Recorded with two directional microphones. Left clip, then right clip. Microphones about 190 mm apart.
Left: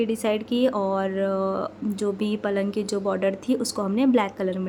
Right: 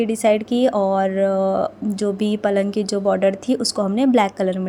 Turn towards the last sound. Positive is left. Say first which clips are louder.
# right 6 dB
turn(degrees=-25)  # may be behind; listen again after turning